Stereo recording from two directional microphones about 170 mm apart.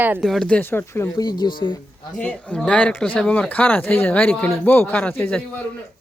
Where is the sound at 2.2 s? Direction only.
10° left (ahead or behind).